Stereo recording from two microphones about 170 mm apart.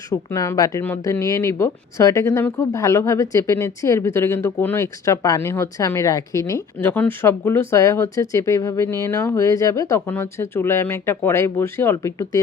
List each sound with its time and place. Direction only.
0.1 s speech: 20° left (ahead or behind)